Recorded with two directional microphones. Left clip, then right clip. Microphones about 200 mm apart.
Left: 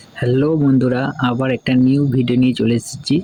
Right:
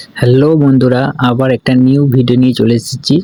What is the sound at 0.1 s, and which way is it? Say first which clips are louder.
Speech: right 7 dB; 30° right (ahead or behind).